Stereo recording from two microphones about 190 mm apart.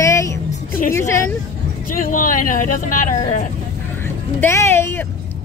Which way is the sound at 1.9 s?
45° left (ahead or behind).